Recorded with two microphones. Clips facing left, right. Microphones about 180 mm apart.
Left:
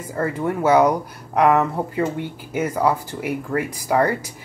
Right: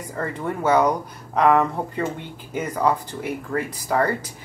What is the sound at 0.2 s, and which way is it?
Speech, 5° left (ahead or behind).